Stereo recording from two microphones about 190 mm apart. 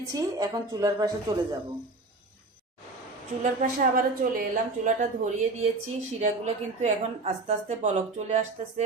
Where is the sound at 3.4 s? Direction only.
45° right (ahead or behind).